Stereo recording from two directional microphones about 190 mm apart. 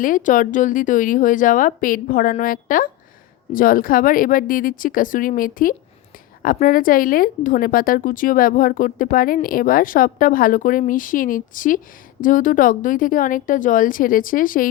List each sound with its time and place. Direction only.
0.0 s a woman's voice: 45° left (ahead or behind)